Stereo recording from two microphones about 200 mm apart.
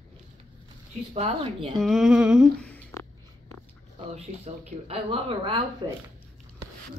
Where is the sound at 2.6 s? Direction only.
10° left (ahead or behind).